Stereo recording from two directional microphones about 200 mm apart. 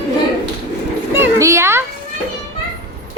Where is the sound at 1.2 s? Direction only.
15° right (ahead or behind).